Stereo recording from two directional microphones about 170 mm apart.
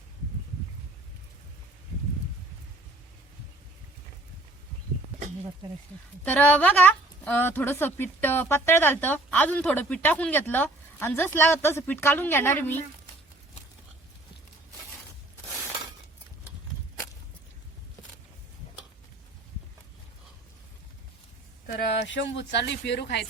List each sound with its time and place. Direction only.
6.2 s a woman's voice: 10° left (ahead or behind)
21.8 s speech: 90° left